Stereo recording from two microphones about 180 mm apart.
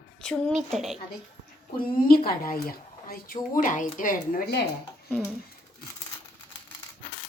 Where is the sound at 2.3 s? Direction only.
55° left (ahead or behind).